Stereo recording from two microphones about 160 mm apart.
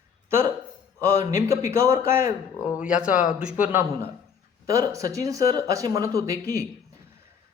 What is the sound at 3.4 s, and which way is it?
A man's voice, 5° right (ahead or behind).